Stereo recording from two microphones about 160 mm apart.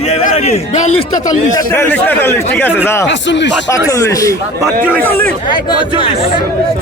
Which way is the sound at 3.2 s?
90° left.